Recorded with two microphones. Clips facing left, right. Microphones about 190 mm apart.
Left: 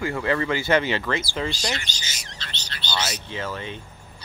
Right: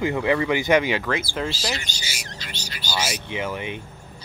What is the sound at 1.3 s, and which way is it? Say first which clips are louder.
Speech: even; centre (ahead or behind).